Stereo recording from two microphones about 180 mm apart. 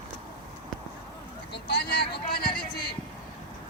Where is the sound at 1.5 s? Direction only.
65° left (ahead or behind).